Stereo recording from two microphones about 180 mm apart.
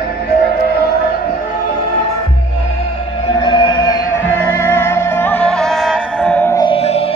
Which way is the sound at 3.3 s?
25° left (ahead or behind).